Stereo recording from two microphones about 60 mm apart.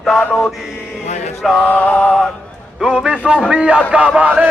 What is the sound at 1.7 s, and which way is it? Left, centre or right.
Music, left.